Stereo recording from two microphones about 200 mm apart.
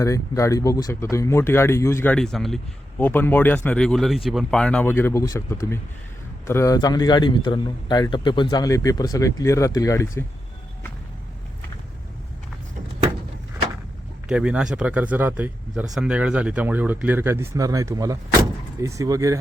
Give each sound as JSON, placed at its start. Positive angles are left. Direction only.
{"t": 0.0, "sound": "a man's voice", "side_deg": 15}
{"t": 14.3, "sound": "speech", "side_deg": -5}